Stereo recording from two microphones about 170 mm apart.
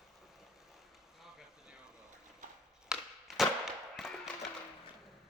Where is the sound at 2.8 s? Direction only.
Centre (ahead or behind).